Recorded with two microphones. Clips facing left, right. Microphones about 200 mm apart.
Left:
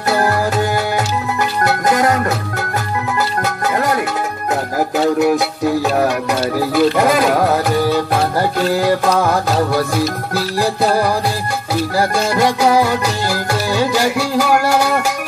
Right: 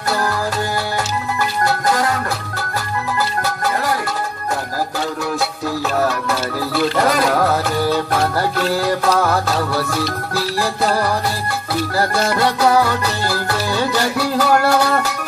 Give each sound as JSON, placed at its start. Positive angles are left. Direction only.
{"t": 4.9, "sound": "music", "side_deg": 20}
{"t": 10.6, "sound": "music", "side_deg": 15}